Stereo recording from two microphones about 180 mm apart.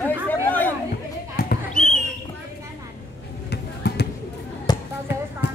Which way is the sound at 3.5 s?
65° left (ahead or behind).